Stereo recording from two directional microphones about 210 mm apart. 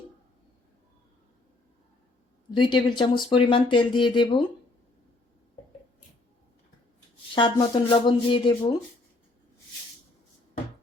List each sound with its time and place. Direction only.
2.6 s speech: 20° left (ahead or behind)
7.3 s speech: 20° left (ahead or behind)